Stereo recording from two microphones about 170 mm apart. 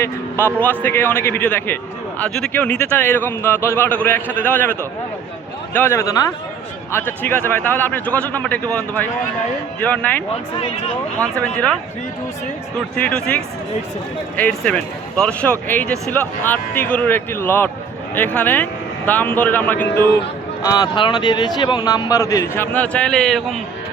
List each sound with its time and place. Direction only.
0.0 s a man's voice: 15° left (ahead or behind)
13.0 s a man's voice: 5° left (ahead or behind)
20.6 s speech: 20° left (ahead or behind); by 23.6 s centre (ahead or behind)